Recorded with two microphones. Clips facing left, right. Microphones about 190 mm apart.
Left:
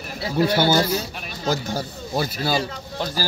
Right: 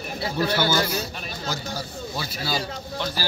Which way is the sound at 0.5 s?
35° left (ahead or behind).